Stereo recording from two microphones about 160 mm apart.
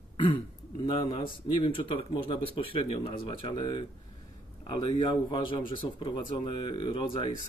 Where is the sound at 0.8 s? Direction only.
30° left (ahead or behind).